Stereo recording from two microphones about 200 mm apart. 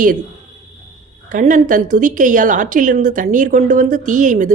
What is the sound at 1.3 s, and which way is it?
Speech, 35° right (ahead or behind).